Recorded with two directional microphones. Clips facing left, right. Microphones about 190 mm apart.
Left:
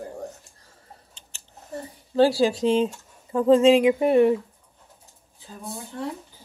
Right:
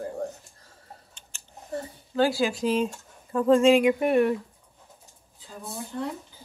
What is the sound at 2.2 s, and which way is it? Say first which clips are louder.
Speech: left 5 dB; 35° left (ahead or behind).